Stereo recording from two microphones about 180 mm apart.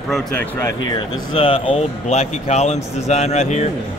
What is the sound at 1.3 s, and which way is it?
Speech, 30° left (ahead or behind).